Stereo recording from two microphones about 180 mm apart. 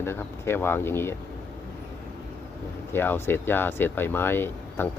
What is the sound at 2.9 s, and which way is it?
Speech, 10° left (ahead or behind).